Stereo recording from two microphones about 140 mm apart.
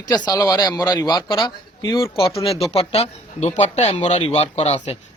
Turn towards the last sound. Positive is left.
turn(degrees=50)  # may be behind; listen again after turning